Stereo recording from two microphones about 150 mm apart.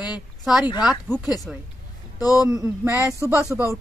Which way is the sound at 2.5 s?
20° right (ahead or behind).